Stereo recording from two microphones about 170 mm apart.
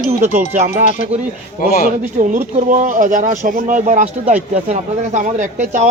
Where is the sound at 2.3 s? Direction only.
50° right (ahead or behind).